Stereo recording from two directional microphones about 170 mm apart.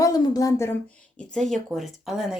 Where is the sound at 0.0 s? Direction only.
20° left (ahead or behind).